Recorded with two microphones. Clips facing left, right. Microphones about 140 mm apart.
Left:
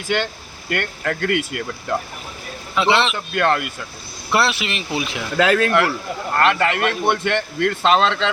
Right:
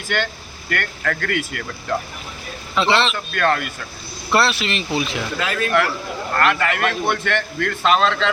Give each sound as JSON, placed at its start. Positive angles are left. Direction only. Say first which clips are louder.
{"t": 0.1, "sound": "a man's voice", "louder": "left 1 dB", "side_deg": 20}
{"t": 2.7, "sound": "speech", "louder": "even", "side_deg": 15}
{"t": 5.4, "sound": "speech", "louder": "left 10 dB", "side_deg": 90}
{"t": 6.4, "sound": "a man's voice", "louder": "left 2 dB", "side_deg": 25}